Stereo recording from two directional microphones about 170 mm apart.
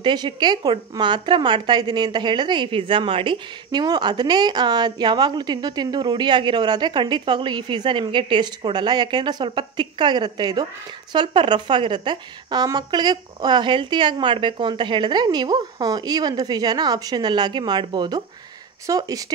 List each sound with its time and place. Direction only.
0.0 s a woman's voice: 25° right (ahead or behind)